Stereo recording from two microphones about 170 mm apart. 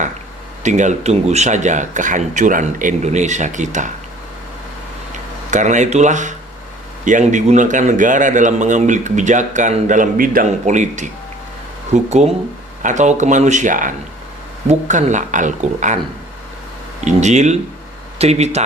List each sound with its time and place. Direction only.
0.6 s a man's voice: 45° right (ahead or behind)
5.5 s a man's voice: 45° right (ahead or behind)
17.0 s a man's voice: 45° right (ahead or behind)